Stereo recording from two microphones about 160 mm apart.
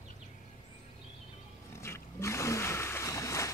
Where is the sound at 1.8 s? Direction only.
15° left (ahead or behind).